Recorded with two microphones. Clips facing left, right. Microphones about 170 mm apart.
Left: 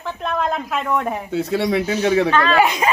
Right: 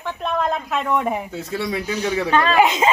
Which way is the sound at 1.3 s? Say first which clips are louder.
Left 6 dB; 75° left (ahead or behind).